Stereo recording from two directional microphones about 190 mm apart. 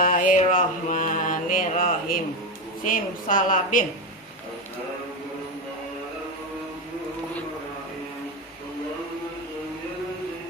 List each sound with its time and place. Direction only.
0.0 s mantra: 45° left (ahead or behind)
2.8 s a woman's voice: 45° left (ahead or behind)